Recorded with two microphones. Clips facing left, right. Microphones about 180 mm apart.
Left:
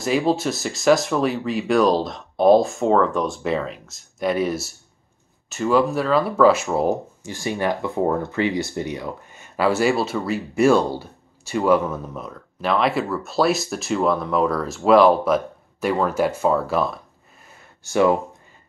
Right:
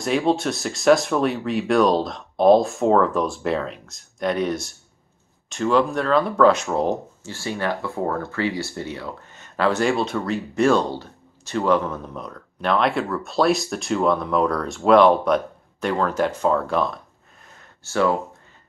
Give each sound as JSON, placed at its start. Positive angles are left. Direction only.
{"t": 0.0, "sound": "speech", "side_deg": 0}
{"t": 17.8, "sound": "speech", "side_deg": 15}